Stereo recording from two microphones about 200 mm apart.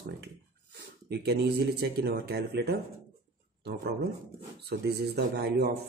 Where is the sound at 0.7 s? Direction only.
55° right (ahead or behind).